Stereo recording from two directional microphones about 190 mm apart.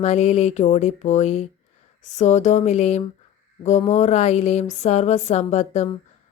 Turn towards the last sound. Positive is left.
turn(degrees=35)  # may be behind; listen again after turning